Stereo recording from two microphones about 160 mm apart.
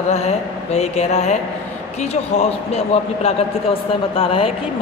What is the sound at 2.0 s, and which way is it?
A woman's voice, 40° left (ahead or behind).